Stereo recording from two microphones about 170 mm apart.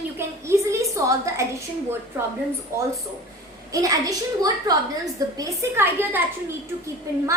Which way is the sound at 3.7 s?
20° right (ahead or behind).